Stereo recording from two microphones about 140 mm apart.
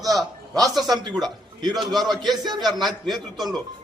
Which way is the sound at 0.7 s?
30° right (ahead or behind).